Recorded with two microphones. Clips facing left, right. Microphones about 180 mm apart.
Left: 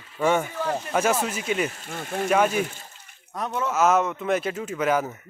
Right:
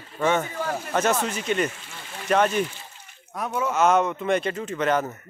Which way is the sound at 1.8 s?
50° left (ahead or behind).